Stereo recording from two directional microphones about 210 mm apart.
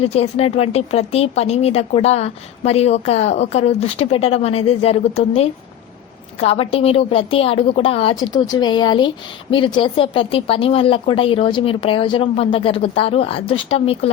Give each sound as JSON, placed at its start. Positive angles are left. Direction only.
{"t": 0.0, "sound": "a woman's voice", "side_deg": 30}